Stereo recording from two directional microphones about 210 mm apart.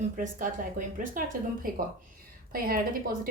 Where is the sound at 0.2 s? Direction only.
40° right (ahead or behind).